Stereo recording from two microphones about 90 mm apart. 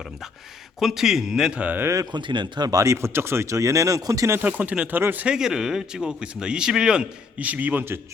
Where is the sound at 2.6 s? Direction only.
40° right (ahead or behind).